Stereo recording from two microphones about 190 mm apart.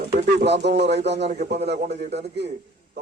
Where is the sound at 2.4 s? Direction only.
60° right (ahead or behind).